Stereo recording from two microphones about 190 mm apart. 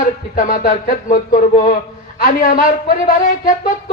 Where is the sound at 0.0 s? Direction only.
45° left (ahead or behind).